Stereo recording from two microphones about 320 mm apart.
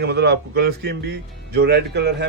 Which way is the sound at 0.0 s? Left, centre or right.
Right.